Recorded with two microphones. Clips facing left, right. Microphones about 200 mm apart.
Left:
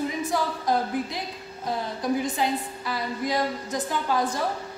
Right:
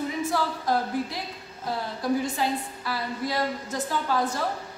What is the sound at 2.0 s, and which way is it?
A woman's voice, 20° left (ahead or behind).